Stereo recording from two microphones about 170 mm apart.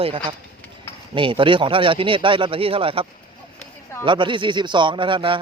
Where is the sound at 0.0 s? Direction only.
30° right (ahead or behind).